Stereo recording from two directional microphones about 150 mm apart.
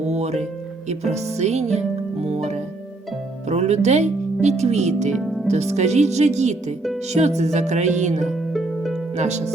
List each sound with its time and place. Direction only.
0.0 s music: 50° right (ahead or behind)
5.2 s music: centre (ahead or behind)
5.5 s music: 50° right (ahead or behind)
8.3 s harp: centre (ahead or behind)
9.1 s music: 50° right (ahead or behind)